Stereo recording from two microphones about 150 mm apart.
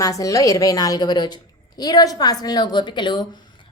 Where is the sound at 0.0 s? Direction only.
20° left (ahead or behind).